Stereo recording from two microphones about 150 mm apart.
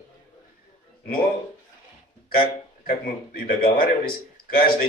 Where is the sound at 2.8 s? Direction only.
70° left (ahead or behind).